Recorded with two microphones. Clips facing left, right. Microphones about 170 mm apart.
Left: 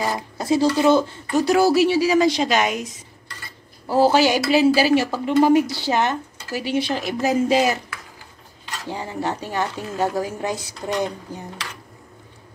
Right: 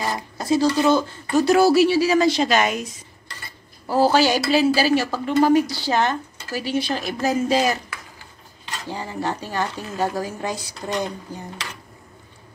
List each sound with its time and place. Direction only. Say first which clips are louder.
0.0 s speech: left 2 dB; 10° left (ahead or behind)
0.7 s a woman's voice: left 2 dB; 25° left (ahead or behind)
1.3 s a woman's voice: right 1 dB; 15° left (ahead or behind)
3.9 s a woman's voice: left 1 dB; 20° left (ahead or behind)
8.8 s a woman's voice: left 1 dB; 20° left (ahead or behind)